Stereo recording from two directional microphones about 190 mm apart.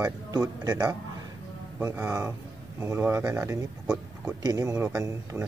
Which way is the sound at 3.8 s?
5° right (ahead or behind).